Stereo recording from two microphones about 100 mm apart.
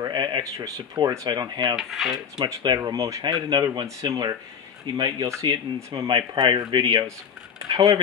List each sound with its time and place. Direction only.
0.1 s a sound: 50° right (ahead or behind)
0.4 s speech: 35° right (ahead or behind)
1.8 s speech: centre (ahead or behind)
2.3 s speech: 45° right (ahead or behind)
5.3 s speech: 30° right (ahead or behind)
6.0 s speech: 50° right (ahead or behind)
7.7 s speech: 40° right (ahead or behind)